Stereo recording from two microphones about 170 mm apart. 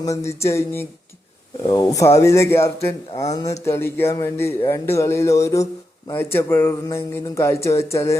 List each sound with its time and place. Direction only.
0.0 s speech: 15° left (ahead or behind)